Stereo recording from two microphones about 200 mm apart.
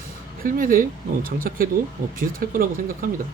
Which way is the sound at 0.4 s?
45° right (ahead or behind).